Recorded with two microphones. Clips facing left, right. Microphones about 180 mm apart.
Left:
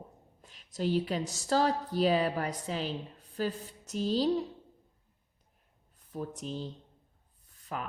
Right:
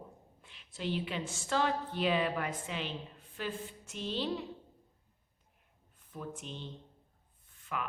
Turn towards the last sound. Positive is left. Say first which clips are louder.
# left 1 dB
turn(degrees=40)  # may be behind; listen again after turning